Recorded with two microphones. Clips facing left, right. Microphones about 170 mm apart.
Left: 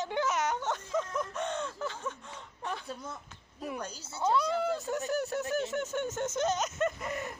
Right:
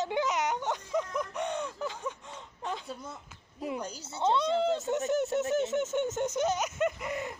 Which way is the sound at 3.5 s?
15° right (ahead or behind).